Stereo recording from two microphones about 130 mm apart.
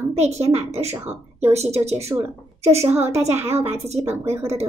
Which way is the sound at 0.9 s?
20° right (ahead or behind).